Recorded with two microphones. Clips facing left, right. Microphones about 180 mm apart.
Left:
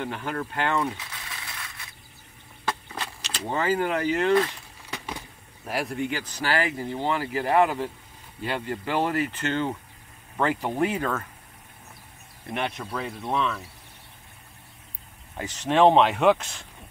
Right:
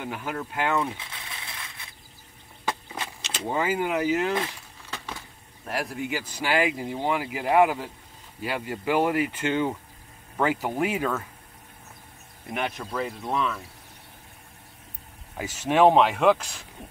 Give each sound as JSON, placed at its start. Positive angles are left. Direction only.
{"t": 0.0, "sound": "speech", "side_deg": -10}
{"t": 2.6, "sound": "a sound", "side_deg": -10}
{"t": 3.2, "sound": "vehicle", "side_deg": -25}
{"t": 3.4, "sound": "speech", "side_deg": -10}
{"t": 4.9, "sound": "a sound", "side_deg": 15}
{"t": 5.7, "sound": "speech", "side_deg": 0}
{"t": 12.4, "sound": "speech", "side_deg": 0}
{"t": 15.3, "sound": "speech", "side_deg": -10}